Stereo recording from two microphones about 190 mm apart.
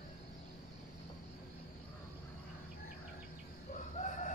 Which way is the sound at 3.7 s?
40° left (ahead or behind).